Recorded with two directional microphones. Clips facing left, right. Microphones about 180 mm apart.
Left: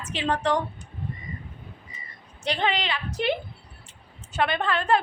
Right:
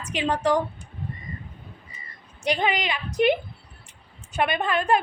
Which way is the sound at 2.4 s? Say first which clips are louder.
Right 2 dB; 10° right (ahead or behind).